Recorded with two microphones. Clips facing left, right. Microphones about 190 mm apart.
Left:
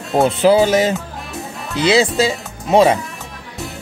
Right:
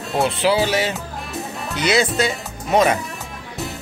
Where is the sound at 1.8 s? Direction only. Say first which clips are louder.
Left 4 dB; 30° left (ahead or behind).